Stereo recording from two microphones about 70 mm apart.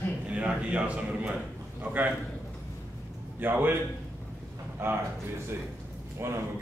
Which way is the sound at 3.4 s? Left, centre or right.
Right.